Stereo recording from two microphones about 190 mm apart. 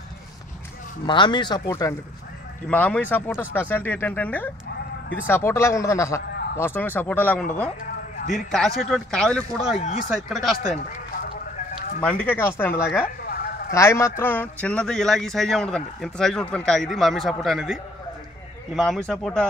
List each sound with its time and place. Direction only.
1.0 s speech: 25° left (ahead or behind); by 10.5 s centre (ahead or behind)
12.0 s speech: 5° left (ahead or behind)
13.2 s a sound: 55° left (ahead or behind)
13.7 s speech: 15° left (ahead or behind); by 17.7 s centre (ahead or behind)
18.8 s speech: 5° left (ahead or behind)